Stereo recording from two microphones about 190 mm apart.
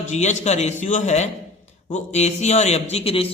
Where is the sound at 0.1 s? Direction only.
40° left (ahead or behind).